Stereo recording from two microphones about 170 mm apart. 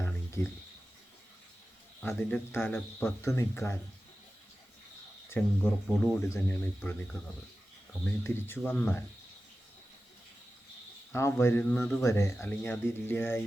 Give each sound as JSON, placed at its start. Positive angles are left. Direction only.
{"t": 0.0, "sound": "a sound", "side_deg": 15}
{"t": 2.0, "sound": "speech", "side_deg": 10}
{"t": 5.3, "sound": "speech", "side_deg": 10}
{"t": 11.1, "sound": "speech", "side_deg": 15}